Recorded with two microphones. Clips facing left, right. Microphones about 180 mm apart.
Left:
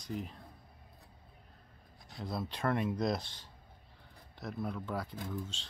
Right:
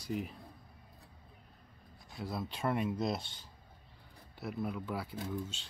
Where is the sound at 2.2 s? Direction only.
5° right (ahead or behind).